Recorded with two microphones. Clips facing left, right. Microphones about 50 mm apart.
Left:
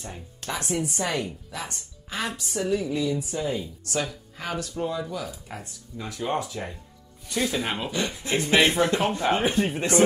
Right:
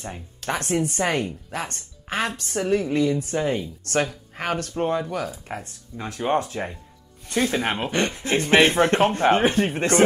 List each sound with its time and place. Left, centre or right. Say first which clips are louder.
0.5 s speech: right 4 dB; right
5.5 s speech: right 5 dB; right